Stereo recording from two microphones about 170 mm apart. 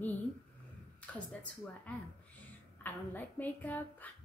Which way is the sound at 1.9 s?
10° left (ahead or behind).